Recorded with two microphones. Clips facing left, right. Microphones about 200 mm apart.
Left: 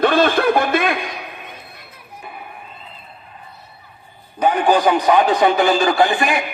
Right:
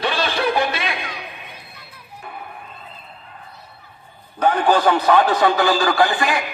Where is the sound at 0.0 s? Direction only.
50° left (ahead or behind).